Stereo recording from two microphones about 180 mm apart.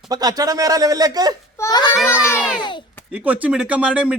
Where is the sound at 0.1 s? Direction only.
20° right (ahead or behind).